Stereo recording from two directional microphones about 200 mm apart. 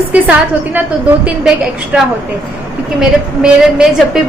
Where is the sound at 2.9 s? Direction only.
5° right (ahead or behind).